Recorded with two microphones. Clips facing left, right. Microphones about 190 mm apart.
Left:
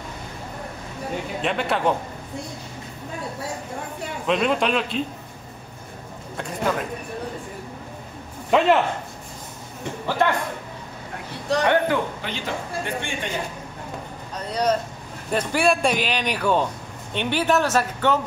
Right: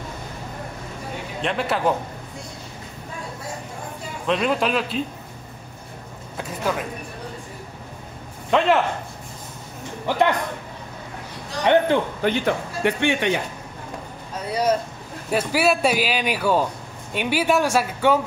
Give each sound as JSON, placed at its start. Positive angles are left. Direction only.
{"t": 1.4, "sound": "speech", "side_deg": 0}
{"t": 4.3, "sound": "speech", "side_deg": 0}
{"t": 6.3, "sound": "speech", "side_deg": -5}
{"t": 8.5, "sound": "speech", "side_deg": 5}
{"t": 10.0, "sound": "a man's voice", "side_deg": -15}
{"t": 11.6, "sound": "a man's voice", "side_deg": -20}
{"t": 12.2, "sound": "speech", "side_deg": -55}
{"t": 14.5, "sound": "speech", "side_deg": -10}